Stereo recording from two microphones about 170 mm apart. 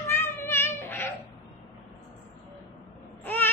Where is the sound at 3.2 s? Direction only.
10° left (ahead or behind).